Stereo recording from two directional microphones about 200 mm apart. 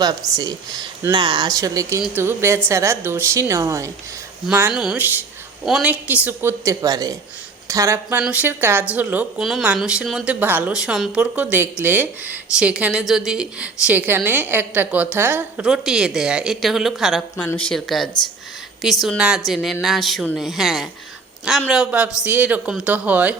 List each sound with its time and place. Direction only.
0.0 s a woman's voice: 20° right (ahead or behind)